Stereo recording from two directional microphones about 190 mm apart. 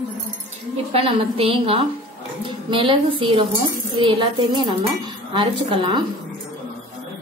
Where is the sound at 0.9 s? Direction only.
30° right (ahead or behind).